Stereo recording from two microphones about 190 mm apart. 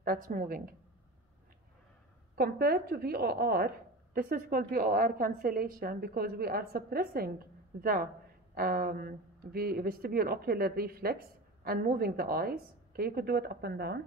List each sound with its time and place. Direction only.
0.0 s a woman's voice: 50° right (ahead or behind)
2.3 s a woman's voice: 55° right (ahead or behind)